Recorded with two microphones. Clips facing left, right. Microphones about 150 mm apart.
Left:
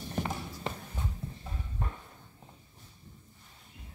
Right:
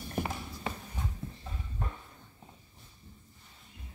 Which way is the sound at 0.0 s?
10° right (ahead or behind).